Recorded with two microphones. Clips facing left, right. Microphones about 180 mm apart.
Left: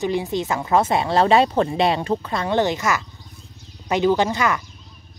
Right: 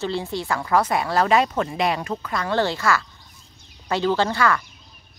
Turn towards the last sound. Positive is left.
turn(degrees=20)  # may be behind; listen again after turning